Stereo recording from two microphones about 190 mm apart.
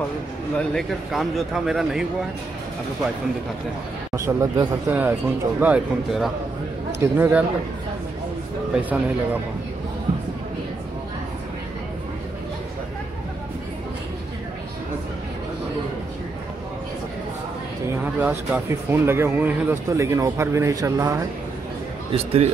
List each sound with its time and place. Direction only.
0.7 s speech: centre (ahead or behind)
4.1 s speech: 15° right (ahead or behind)
8.7 s speech: 5° right (ahead or behind)
17.8 s speech: 10° right (ahead or behind)
22.1 s a man's voice: 30° right (ahead or behind)